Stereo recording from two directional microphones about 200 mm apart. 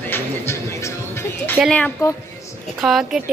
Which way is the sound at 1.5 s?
5° left (ahead or behind).